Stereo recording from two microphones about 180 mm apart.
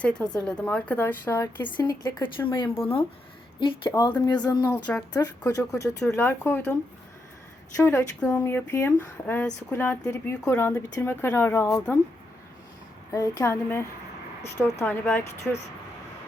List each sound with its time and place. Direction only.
0.0 s speech: 5° left (ahead or behind)
1.6 s speech: 25° left (ahead or behind)
4.6 s speech: 10° left (ahead or behind)
7.8 s speech: 5° left (ahead or behind)
13.1 s speech: 15° left (ahead or behind)